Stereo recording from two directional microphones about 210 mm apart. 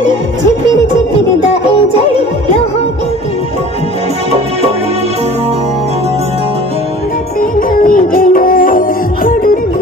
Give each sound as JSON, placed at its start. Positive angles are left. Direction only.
{"t": 7.7, "sound": "music", "side_deg": 40}